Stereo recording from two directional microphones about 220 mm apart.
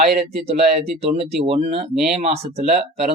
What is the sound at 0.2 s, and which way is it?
Speech, 25° right (ahead or behind).